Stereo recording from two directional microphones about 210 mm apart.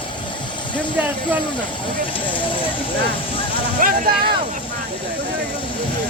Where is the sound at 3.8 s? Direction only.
45° right (ahead or behind).